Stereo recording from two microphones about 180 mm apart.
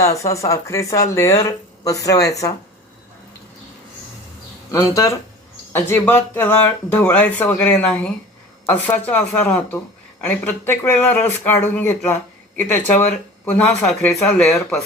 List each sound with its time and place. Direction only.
0.0 s speech: 15° left (ahead or behind)
4.7 s speech: 20° left (ahead or behind); by 14.8 s centre (ahead or behind)